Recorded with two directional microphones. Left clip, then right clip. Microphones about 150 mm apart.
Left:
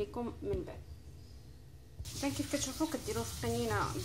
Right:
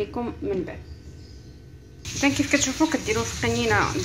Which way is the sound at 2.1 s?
5° left (ahead or behind).